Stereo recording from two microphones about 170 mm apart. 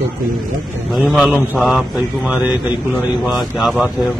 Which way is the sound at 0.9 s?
Centre (ahead or behind).